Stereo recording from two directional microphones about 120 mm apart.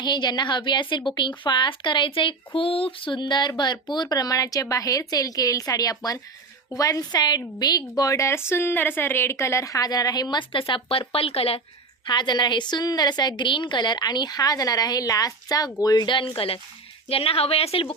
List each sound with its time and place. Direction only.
0.0 s speech: 40° left (ahead or behind)
12.0 s a woman's voice: 40° left (ahead or behind)